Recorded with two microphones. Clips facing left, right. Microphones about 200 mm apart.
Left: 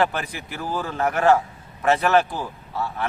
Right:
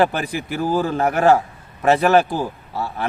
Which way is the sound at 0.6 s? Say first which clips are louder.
Right 5 dB; 35° right (ahead or behind).